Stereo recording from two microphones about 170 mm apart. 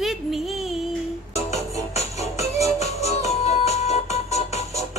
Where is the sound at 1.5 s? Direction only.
40° left (ahead or behind).